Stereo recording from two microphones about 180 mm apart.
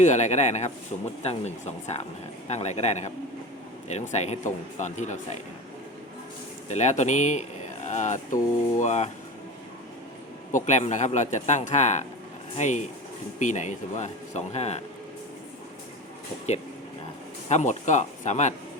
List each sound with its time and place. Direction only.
0.0 s speech: 40° left (ahead or behind)
6.7 s speech: 40° left (ahead or behind)
10.5 s speech: 40° left (ahead or behind)
17.5 s speech: 40° left (ahead or behind)